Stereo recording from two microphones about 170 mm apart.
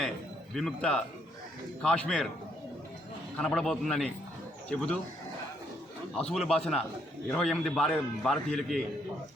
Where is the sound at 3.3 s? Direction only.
5° left (ahead or behind).